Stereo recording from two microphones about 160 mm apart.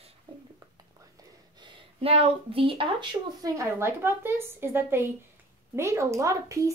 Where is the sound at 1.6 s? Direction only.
35° right (ahead or behind).